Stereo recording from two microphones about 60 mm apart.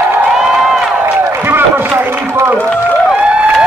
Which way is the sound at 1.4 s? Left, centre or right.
Right.